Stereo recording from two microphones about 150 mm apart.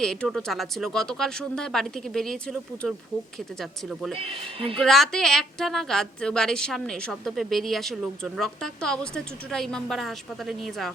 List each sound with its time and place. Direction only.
0.0 s a woman's voice: 5° left (ahead or behind)
4.1 s speech: 40° right (ahead or behind)
4.8 s a woman's voice: centre (ahead or behind)